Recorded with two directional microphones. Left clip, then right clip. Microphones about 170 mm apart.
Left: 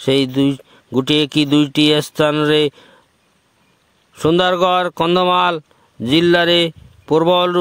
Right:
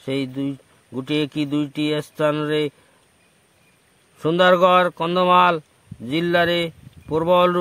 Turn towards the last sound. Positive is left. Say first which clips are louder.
# left 3 dB
turn(degrees=65)  # may be behind; listen again after turning